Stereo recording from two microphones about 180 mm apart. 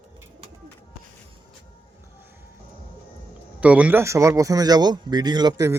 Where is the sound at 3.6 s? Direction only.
10° right (ahead or behind).